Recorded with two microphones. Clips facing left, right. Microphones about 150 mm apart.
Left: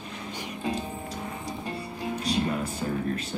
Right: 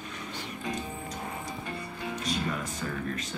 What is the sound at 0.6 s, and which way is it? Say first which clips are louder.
Music: left 5 dB; 30° left (ahead or behind).